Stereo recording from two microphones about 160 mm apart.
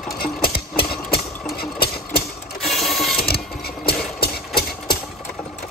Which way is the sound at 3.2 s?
75° left (ahead or behind).